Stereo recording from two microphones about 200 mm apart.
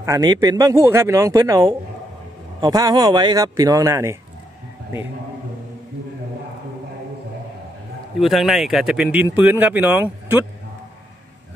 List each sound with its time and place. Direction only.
0.0 s speech: 15° right (ahead or behind)
8.2 s speech: centre (ahead or behind)